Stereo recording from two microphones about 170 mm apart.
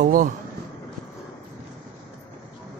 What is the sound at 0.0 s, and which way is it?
Speech, 50° right (ahead or behind).